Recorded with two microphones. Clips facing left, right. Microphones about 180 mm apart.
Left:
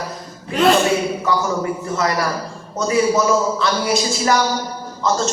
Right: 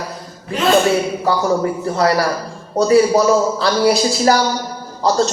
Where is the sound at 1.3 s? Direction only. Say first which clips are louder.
Right 5 dB; 35° right (ahead or behind).